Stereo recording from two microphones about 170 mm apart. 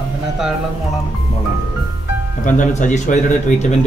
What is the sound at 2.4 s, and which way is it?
A man's voice, 50° left (ahead or behind).